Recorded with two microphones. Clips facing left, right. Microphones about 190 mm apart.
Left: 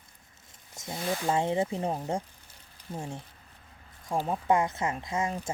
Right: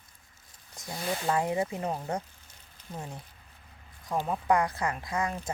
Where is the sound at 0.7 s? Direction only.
25° left (ahead or behind).